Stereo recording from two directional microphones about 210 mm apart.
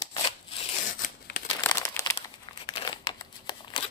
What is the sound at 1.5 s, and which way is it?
Crumpling, 15° left (ahead or behind).